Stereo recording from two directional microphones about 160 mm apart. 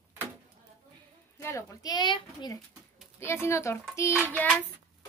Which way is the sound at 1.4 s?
20° left (ahead or behind).